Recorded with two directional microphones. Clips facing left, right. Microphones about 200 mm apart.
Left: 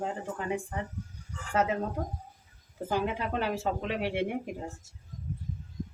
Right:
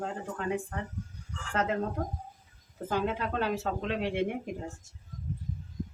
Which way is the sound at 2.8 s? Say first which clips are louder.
Even; 10° left (ahead or behind).